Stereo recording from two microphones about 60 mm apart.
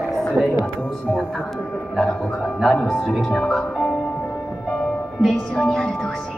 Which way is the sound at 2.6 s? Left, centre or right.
Centre.